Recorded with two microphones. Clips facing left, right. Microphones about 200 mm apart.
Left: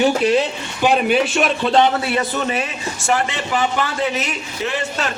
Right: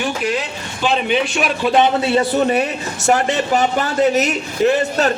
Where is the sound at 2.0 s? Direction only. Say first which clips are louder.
Right 5 dB; 25° right (ahead or behind).